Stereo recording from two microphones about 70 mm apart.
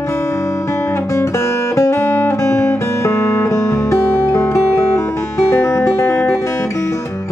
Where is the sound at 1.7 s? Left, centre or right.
Left.